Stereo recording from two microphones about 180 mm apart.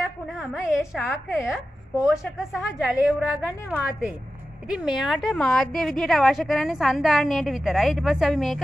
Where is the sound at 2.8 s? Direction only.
5° right (ahead or behind).